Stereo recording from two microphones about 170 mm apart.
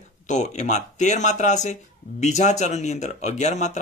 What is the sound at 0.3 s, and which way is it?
A man's voice, 45° left (ahead or behind).